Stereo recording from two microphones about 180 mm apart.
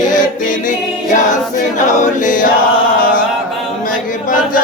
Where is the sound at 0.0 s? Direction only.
45° left (ahead or behind).